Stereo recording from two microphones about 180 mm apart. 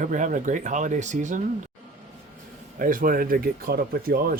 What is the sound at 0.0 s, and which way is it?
Speech, 45° right (ahead or behind).